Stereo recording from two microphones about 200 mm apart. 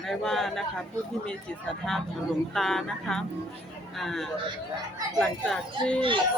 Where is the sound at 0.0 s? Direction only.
Centre (ahead or behind).